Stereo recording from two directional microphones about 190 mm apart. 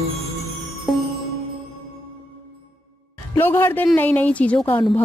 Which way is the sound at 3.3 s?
10° left (ahead or behind).